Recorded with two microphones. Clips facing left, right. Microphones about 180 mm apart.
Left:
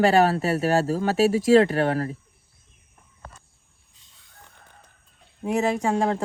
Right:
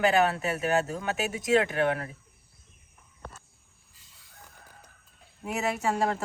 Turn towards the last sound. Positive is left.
turn(degrees=30)  # may be behind; listen again after turning